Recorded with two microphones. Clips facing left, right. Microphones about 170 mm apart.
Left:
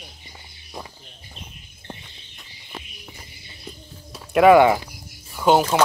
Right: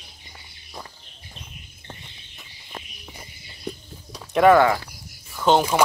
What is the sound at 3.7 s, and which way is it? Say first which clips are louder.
Music: right 7 dB; 65° right (ahead or behind).